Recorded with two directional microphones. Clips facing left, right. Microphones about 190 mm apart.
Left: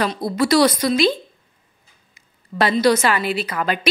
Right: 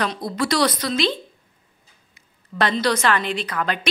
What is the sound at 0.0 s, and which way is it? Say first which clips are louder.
A woman's voice: left 4 dB; 5° left (ahead or behind).